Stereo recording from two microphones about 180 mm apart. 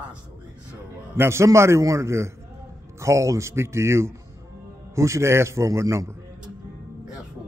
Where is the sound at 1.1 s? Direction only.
15° right (ahead or behind).